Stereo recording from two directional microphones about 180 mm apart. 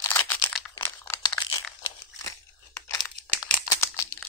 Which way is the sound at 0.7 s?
15° left (ahead or behind).